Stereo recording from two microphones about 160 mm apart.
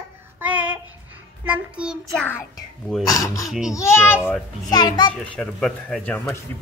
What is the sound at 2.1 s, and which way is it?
Speech, 10° left (ahead or behind).